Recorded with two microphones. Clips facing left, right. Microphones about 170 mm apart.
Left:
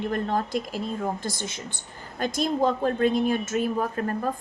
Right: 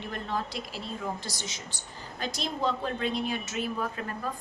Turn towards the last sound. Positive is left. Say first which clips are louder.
# left 7 dB
turn(degrees=45)  # may be behind; listen again after turning